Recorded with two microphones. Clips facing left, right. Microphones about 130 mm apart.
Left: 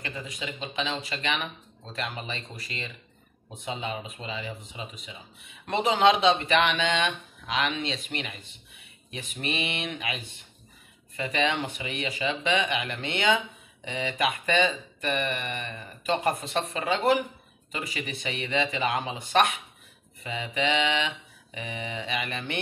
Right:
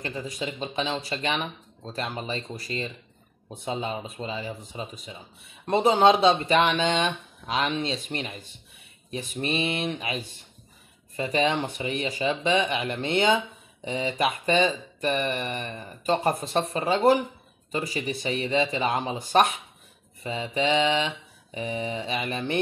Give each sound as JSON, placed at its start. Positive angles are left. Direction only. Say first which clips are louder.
{"t": 0.0, "sound": "speech", "louder": "right 4 dB", "side_deg": -40}